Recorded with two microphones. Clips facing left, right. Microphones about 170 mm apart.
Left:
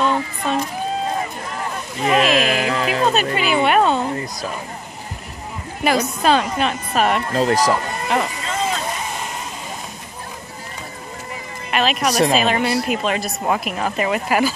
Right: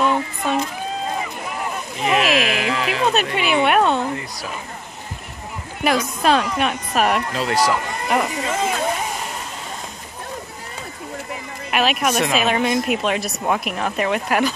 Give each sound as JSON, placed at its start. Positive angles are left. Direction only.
{"t": 0.0, "sound": "a sound", "side_deg": 0}
{"t": 2.0, "sound": "a sound", "side_deg": 0}
{"t": 2.3, "sound": "music", "side_deg": 35}
{"t": 3.1, "sound": "a woman's voice", "side_deg": 0}
{"t": 5.8, "sound": "speech", "side_deg": 0}
{"t": 7.3, "sound": "speech", "side_deg": 40}
{"t": 8.1, "sound": "speech", "side_deg": -5}
{"t": 11.7, "sound": "speech", "side_deg": -5}